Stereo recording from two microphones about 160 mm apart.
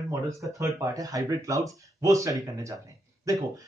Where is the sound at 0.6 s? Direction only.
20° right (ahead or behind).